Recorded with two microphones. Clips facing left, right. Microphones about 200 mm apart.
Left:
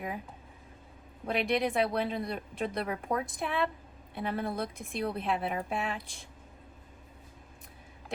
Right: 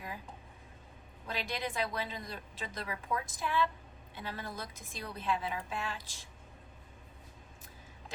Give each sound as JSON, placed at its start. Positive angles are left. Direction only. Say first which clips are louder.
{"t": 1.3, "sound": "a woman's voice", "louder": "left 9 dB", "side_deg": 65}